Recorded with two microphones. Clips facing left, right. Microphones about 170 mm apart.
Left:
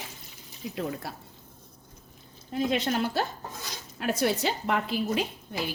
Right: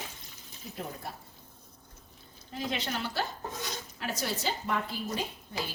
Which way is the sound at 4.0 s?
60° left (ahead or behind).